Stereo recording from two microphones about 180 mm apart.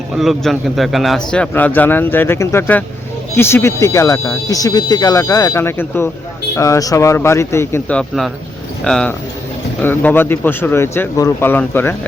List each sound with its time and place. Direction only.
0.1 s a man's voice: centre (ahead or behind)